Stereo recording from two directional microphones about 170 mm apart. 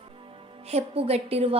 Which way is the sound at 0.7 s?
35° right (ahead or behind).